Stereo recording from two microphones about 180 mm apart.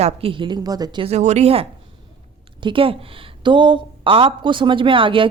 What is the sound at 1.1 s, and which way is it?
A woman's voice, 40° right (ahead or behind).